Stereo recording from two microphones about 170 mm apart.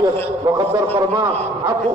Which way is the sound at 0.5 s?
20° right (ahead or behind).